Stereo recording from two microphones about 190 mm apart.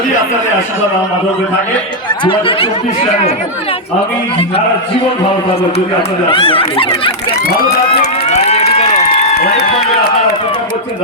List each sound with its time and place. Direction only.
2.0 s speech: 25° left (ahead or behind)
5.7 s speech: 30° left (ahead or behind)
8.8 s run: 30° left (ahead or behind)
9.3 s speech: 55° left (ahead or behind)